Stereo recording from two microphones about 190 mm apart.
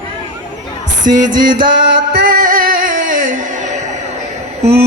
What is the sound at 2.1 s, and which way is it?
Music, 50° right (ahead or behind).